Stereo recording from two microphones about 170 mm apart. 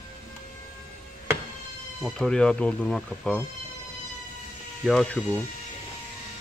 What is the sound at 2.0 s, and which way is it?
Speech, centre (ahead or behind).